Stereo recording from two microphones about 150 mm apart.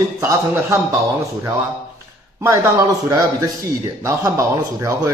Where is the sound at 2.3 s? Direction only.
15° right (ahead or behind).